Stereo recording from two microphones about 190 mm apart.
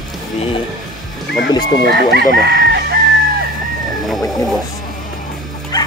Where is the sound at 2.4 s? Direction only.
65° right (ahead or behind).